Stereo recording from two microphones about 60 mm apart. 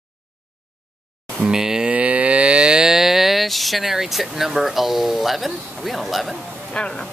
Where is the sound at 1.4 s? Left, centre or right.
Centre.